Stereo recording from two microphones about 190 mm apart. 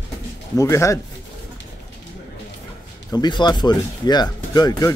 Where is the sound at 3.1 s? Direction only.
20° left (ahead or behind).